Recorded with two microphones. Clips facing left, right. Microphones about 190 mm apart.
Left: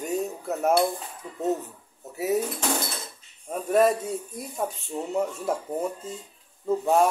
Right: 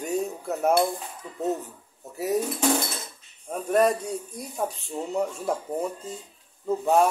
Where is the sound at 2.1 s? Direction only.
Centre (ahead or behind).